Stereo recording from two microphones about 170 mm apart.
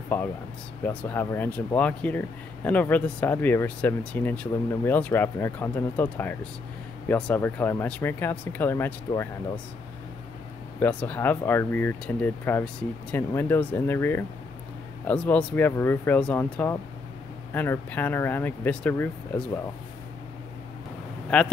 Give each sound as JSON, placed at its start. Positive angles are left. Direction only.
{"t": 0.1, "sound": "speech", "side_deg": 5}
{"t": 10.8, "sound": "speech", "side_deg": 10}
{"t": 21.3, "sound": "a man's voice", "side_deg": 5}